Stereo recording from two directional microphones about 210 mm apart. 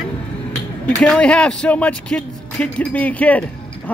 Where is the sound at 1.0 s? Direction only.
5° left (ahead or behind).